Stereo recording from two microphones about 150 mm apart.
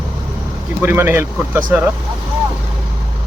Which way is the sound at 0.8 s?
15° right (ahead or behind).